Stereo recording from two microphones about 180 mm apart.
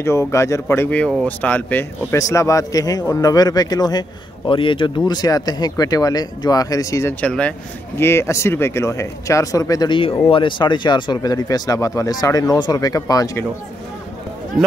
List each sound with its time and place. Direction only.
0.0 s speech: 15° left (ahead or behind)